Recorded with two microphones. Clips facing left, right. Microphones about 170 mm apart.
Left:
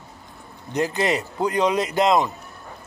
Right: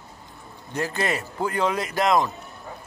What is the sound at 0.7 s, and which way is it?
Speech, 20° left (ahead or behind).